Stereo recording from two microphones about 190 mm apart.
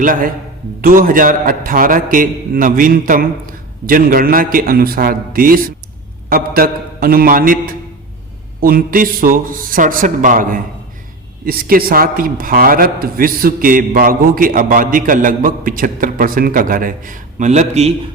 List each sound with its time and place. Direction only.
0.0 s a man's voice: 45° right (ahead or behind)